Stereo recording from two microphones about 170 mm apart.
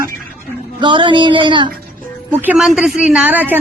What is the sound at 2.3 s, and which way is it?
Speech, 5° right (ahead or behind).